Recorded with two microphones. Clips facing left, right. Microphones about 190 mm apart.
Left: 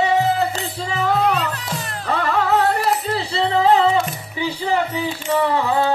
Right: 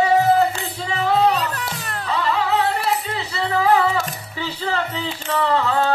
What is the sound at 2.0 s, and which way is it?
Music, 55° left (ahead or behind).